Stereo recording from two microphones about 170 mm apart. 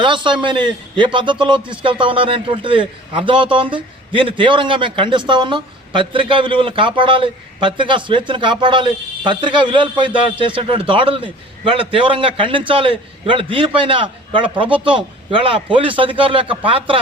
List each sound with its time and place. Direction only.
0.0 s a man's voice: 30° right (ahead or behind)